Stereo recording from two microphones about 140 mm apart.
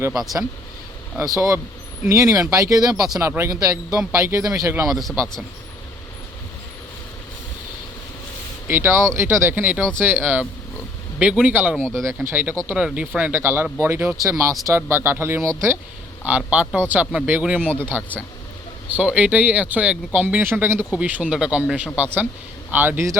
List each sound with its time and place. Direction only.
0.1 s a man's voice: centre (ahead or behind)
1.4 s speech: 20° right (ahead or behind)
4.9 s a man's voice: centre (ahead or behind)
8.6 s speech: 15° right (ahead or behind)
11.8 s a man's voice: 5° left (ahead or behind)
12.0 s speech: 15° right (ahead or behind)
17.6 s speech: 10° left (ahead or behind)
18.9 s speech: 10° right (ahead or behind)